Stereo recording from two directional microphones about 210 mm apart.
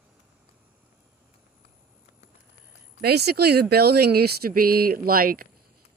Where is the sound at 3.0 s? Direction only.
50° right (ahead or behind).